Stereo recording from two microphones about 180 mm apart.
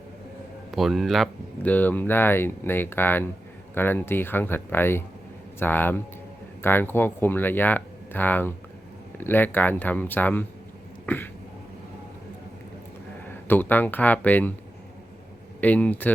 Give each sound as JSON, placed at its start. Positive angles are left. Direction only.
{"t": 0.7, "sound": "speech", "side_deg": 0}
{"t": 11.0, "sound": "throat clearing", "side_deg": 10}
{"t": 13.5, "sound": "speech", "side_deg": 10}
{"t": 15.6, "sound": "speech", "side_deg": 10}